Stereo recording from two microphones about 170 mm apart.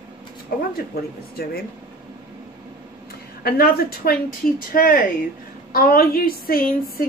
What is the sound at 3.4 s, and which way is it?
A woman's voice, 65° left (ahead or behind).